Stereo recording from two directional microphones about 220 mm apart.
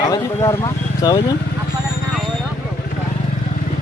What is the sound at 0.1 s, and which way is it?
Speech, 15° left (ahead or behind).